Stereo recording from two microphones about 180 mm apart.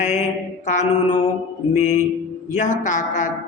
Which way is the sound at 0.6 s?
40° left (ahead or behind).